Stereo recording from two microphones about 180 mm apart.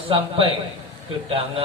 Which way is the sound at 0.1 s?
30° right (ahead or behind).